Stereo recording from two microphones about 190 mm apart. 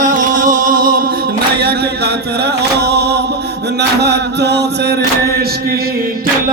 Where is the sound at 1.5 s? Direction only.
55° right (ahead or behind).